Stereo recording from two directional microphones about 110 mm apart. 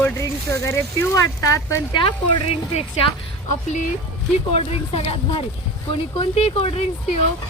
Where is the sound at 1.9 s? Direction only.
50° left (ahead or behind).